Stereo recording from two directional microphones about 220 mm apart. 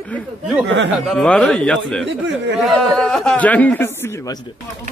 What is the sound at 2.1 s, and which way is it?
Speech, 55° right (ahead or behind).